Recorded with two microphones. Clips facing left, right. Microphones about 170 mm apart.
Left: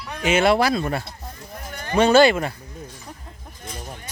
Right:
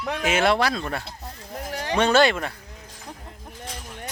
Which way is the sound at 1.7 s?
90° right.